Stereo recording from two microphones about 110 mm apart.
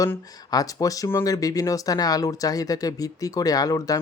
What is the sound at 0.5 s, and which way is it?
Speech, 30° left (ahead or behind).